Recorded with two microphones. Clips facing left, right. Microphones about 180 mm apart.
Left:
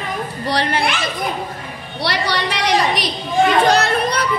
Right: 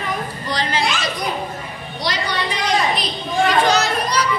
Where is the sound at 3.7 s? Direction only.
55° left (ahead or behind).